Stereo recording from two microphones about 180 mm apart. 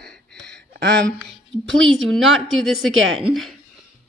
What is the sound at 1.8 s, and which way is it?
Speech, centre (ahead or behind).